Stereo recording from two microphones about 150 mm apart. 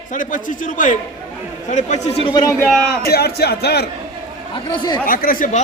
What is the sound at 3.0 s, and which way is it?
Speech, 90° left.